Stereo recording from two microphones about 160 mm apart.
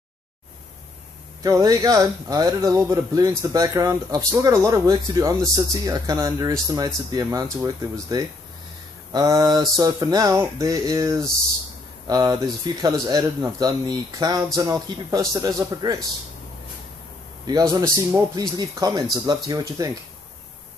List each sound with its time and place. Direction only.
1.4 s speech: 20° right (ahead or behind)
17.5 s speech: 25° right (ahead or behind)